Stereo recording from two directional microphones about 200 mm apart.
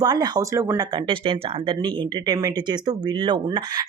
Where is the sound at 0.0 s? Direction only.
20° right (ahead or behind).